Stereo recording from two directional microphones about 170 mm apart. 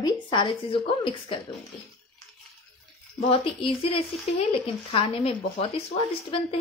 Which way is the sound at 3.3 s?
30° left (ahead or behind).